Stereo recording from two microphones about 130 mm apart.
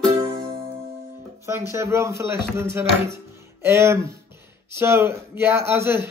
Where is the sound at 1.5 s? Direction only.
20° right (ahead or behind).